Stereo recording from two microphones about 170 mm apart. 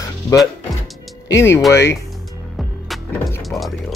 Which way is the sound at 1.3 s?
20° left (ahead or behind).